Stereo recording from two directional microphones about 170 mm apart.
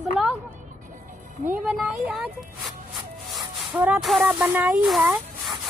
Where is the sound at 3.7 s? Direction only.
5° right (ahead or behind).